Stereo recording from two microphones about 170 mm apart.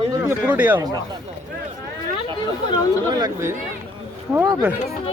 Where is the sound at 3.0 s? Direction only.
25° right (ahead or behind).